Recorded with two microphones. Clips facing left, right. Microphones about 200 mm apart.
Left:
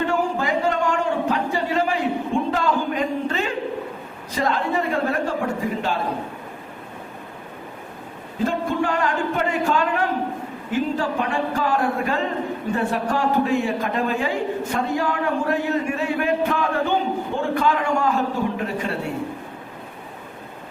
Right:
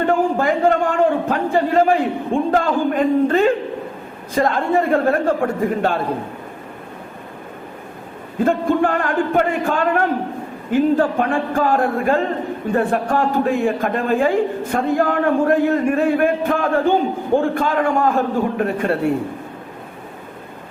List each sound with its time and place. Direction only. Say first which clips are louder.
0.0 s a sound: right 5 dB; 50° right (ahead or behind)
4.4 s a man's voice: right 5 dB; 50° right (ahead or behind)
8.4 s a man's voice: right 6 dB; 55° right (ahead or behind)